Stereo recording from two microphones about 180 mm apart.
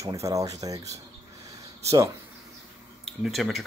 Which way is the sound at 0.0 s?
15° right (ahead or behind).